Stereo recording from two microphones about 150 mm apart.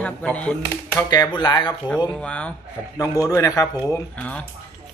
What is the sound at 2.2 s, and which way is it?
Speech, 10° left (ahead or behind).